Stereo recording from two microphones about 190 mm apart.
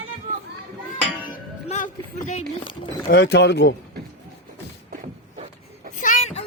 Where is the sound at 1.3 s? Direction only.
45° left (ahead or behind).